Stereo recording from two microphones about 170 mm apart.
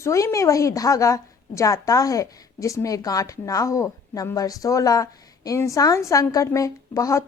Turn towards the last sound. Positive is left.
turn(degrees=20)  # may be behind; listen again after turning